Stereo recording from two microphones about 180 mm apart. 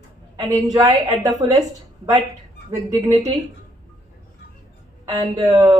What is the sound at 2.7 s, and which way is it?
Speech, 20° right (ahead or behind).